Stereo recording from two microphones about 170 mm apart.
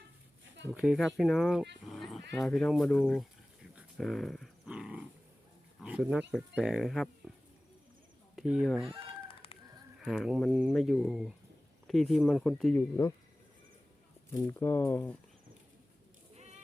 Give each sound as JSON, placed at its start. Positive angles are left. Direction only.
{"t": 0.7, "sound": "speech", "side_deg": -5}
{"t": 3.8, "sound": "dog", "side_deg": 0}
{"t": 5.8, "sound": "speech", "side_deg": -5}
{"t": 8.4, "sound": "speech", "side_deg": 0}
{"t": 9.2, "sound": "chicken", "side_deg": 30}
{"t": 10.0, "sound": "speech", "side_deg": 0}
{"t": 14.3, "sound": "speech", "side_deg": 15}
{"t": 16.3, "sound": "chicken", "side_deg": -40}